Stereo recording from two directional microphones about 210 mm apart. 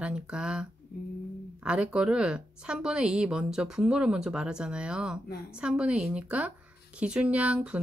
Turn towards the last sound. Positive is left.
turn(degrees=-5)  # may be behind; listen again after turning